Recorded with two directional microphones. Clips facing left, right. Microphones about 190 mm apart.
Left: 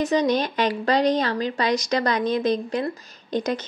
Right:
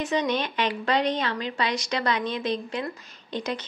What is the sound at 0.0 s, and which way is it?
A woman's voice, 40° left (ahead or behind).